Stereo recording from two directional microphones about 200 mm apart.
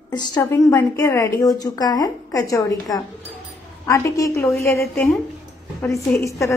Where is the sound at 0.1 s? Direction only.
20° left (ahead or behind).